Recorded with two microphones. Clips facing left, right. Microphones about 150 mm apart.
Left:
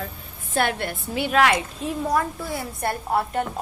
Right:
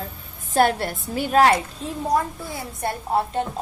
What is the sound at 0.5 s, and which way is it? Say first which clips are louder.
A woman's voice: right 5 dB; 40° right (ahead or behind).